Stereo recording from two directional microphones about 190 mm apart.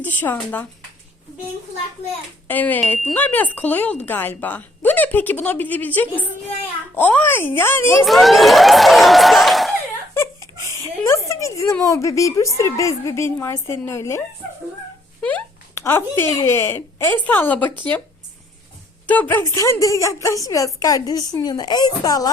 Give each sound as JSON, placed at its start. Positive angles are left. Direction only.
{"t": 0.0, "sound": "speech", "side_deg": 10}
{"t": 2.5, "sound": "speech", "side_deg": 10}
{"t": 8.0, "sound": "speech", "side_deg": 0}
{"t": 10.2, "sound": "speech", "side_deg": 15}
{"t": 15.2, "sound": "speech", "side_deg": 10}
{"t": 19.0, "sound": "speech", "side_deg": 10}